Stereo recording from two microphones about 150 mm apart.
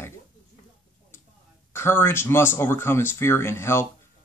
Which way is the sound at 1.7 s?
15° left (ahead or behind).